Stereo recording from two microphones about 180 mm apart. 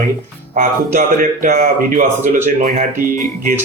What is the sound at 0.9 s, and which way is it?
Speech, 50° right (ahead or behind).